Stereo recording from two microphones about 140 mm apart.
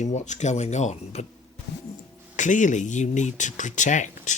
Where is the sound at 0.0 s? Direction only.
55° left (ahead or behind).